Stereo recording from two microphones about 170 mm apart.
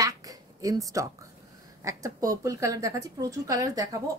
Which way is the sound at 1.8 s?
20° right (ahead or behind).